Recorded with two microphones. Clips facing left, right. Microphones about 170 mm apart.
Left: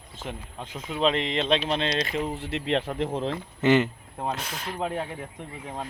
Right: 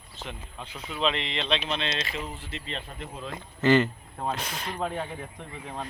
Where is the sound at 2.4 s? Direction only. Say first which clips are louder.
Left 11 dB; 65° left (ahead or behind); by 3.3 s 85° left.